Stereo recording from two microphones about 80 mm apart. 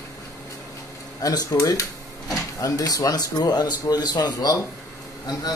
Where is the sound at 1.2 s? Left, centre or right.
Left.